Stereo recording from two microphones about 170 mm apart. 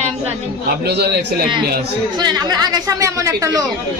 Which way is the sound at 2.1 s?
25° right (ahead or behind).